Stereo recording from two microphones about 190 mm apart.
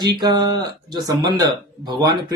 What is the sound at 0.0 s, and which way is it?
A man's voice, 20° right (ahead or behind).